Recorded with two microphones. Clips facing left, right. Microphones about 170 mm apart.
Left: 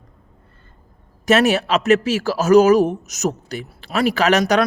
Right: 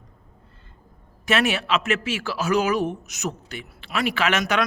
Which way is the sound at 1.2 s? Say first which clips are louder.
Left 7 dB; 40° left (ahead or behind).